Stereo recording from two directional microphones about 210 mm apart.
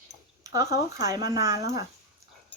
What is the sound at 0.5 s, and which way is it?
Speech, 15° right (ahead or behind).